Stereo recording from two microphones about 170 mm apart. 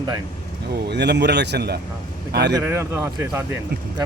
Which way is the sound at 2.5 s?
15° right (ahead or behind).